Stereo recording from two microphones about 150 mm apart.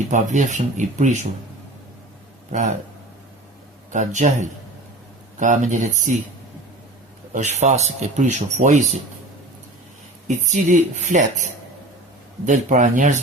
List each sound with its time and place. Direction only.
0.1 s speech: 55° right (ahead or behind)
2.5 s speech: 55° right (ahead or behind)
3.9 s speech: 55° right (ahead or behind)
7.3 s speech: 50° right (ahead or behind)
10.2 s speech: 55° right (ahead or behind)